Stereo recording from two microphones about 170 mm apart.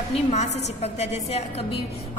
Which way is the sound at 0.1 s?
40° left (ahead or behind).